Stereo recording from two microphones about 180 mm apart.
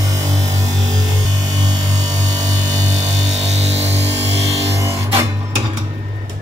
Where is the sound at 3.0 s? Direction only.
40° right (ahead or behind).